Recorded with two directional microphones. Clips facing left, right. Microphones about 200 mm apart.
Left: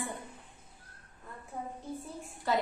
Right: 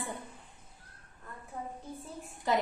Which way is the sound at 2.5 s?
15° right (ahead or behind).